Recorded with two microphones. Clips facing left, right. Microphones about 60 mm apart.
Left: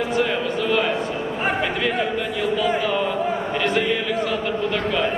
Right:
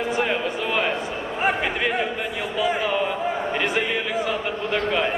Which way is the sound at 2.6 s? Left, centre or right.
Centre.